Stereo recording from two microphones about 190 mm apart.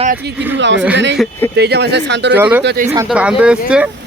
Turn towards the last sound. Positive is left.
turn(degrees=-5)  # may be behind; listen again after turning